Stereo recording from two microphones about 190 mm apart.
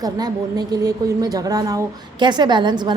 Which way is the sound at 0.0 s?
20° right (ahead or behind).